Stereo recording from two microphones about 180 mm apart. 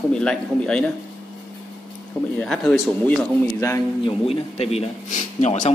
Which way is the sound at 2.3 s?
Centre (ahead or behind).